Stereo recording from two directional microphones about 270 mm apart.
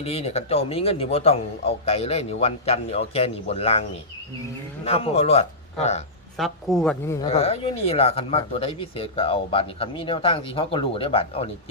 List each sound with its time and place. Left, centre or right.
0.0 s speech: left
4.9 s speech: left
6.3 s speech: centre
7.3 s speech: left